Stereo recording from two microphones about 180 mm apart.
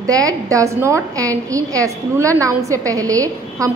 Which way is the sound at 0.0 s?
20° right (ahead or behind).